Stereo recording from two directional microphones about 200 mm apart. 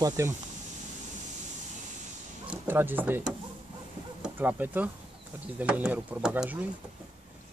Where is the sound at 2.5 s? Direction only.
10° right (ahead or behind).